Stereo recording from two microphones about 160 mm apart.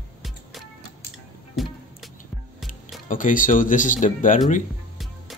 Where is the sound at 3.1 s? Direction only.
55° left (ahead or behind).